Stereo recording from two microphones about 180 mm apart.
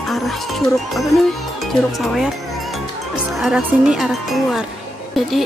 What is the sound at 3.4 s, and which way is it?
Speech, 5° right (ahead or behind).